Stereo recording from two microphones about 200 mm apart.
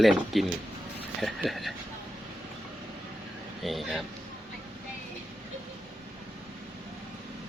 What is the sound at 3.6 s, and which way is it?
Speech, centre (ahead or behind).